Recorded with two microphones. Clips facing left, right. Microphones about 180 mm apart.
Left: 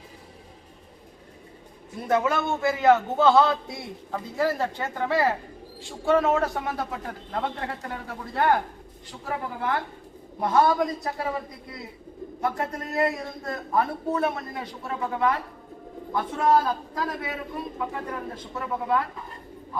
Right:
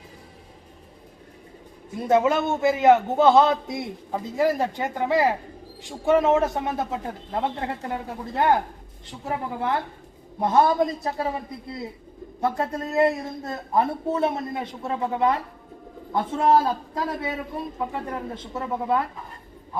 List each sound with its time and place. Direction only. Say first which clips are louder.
2.0 s a man's voice: right 4 dB; 20° right (ahead or behind)
12.4 s a man's voice: right 3 dB; 25° right (ahead or behind)
18.3 s a man's voice: right 2 dB; 25° right (ahead or behind)